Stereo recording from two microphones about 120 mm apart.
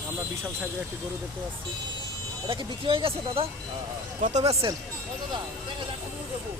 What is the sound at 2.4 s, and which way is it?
Speech, 45° right (ahead or behind).